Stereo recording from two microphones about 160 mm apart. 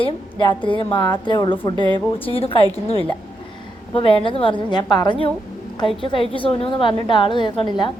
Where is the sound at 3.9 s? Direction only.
35° left (ahead or behind).